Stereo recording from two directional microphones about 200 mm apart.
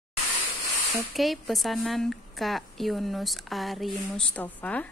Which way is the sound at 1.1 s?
Centre (ahead or behind).